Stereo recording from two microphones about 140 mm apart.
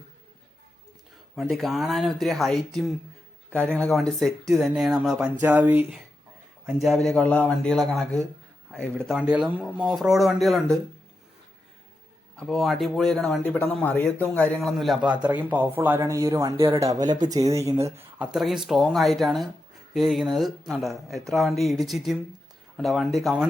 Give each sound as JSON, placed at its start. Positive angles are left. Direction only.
{"t": 1.4, "sound": "speech", "side_deg": 0}
{"t": 6.7, "sound": "speech", "side_deg": 0}
{"t": 9.1, "sound": "speech", "side_deg": -5}
{"t": 12.4, "sound": "speech", "side_deg": 5}
{"t": 14.6, "sound": "speech", "side_deg": 0}
{"t": 15.2, "sound": "speech", "side_deg": -10}
{"t": 18.2, "sound": "speech", "side_deg": -5}